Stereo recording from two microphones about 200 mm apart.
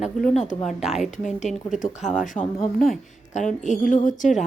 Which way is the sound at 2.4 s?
Centre (ahead or behind).